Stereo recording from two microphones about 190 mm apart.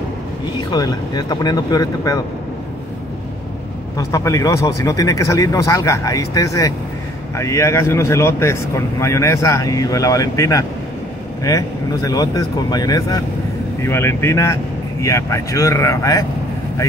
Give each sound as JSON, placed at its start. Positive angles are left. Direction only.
{"t": 0.7, "sound": "speech", "side_deg": 20}
{"t": 3.9, "sound": "speech", "side_deg": 15}